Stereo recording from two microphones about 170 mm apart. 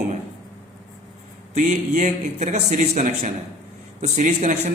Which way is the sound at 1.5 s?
40° right (ahead or behind).